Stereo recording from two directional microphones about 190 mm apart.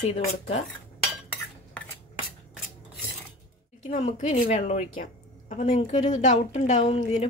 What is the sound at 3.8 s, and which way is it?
Speech, 35° left (ahead or behind).